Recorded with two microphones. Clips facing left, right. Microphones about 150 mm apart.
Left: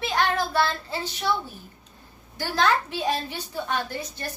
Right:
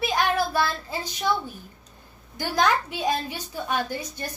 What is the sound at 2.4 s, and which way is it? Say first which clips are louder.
A woman's voice: even; 15° right (ahead or behind).